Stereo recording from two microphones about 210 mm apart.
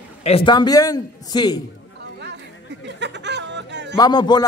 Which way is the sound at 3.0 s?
55° right (ahead or behind).